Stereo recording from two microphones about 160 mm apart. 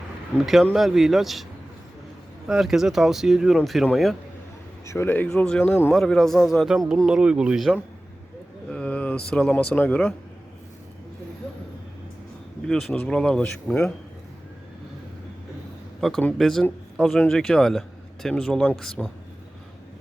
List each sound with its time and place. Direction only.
0.3 s a man's voice: centre (ahead or behind)
2.5 s a man's voice: 5° right (ahead or behind)
4.9 s a man's voice: 15° left (ahead or behind)
12.6 s a man's voice: 5° left (ahead or behind)
16.0 s a man's voice: centre (ahead or behind)